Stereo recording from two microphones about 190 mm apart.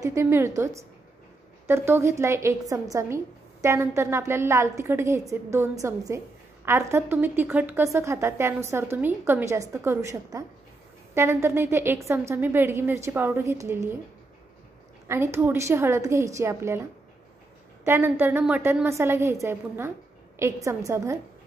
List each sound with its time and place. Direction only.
0.0 s a woman's voice: 15° right (ahead or behind)
15.0 s a woman's voice: 15° right (ahead or behind)
17.8 s a woman's voice: 15° right (ahead or behind)